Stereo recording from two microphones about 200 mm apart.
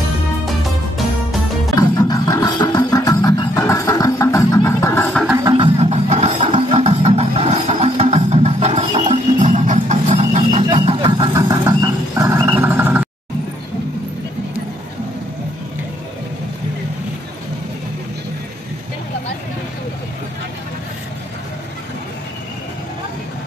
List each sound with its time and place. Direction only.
1.8 s music: 20° left (ahead or behind)
5.3 s music: 20° right (ahead or behind)